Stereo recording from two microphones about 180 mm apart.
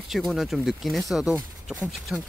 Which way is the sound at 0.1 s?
Centre (ahead or behind).